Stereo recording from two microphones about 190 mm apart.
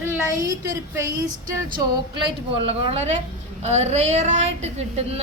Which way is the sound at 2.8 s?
35° right (ahead or behind).